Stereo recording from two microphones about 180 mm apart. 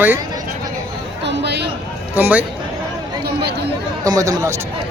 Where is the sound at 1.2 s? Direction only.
70° right (ahead or behind).